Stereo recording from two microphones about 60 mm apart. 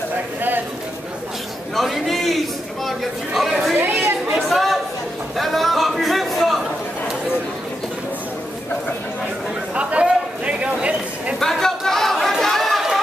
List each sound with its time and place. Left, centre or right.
1.8 s a man's voice: centre
3.3 s speech: centre
3.7 s chatter: right
4.3 s speech: centre
5.4 s a sound: centre
9.8 s a sound: centre
11.3 s chatter: centre